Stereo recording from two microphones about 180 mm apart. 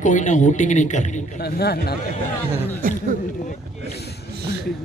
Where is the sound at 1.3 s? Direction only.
60° left (ahead or behind).